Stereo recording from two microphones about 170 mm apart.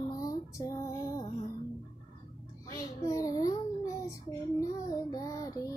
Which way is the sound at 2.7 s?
20° left (ahead or behind).